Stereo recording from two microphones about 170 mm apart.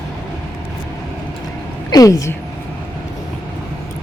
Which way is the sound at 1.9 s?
20° left (ahead or behind).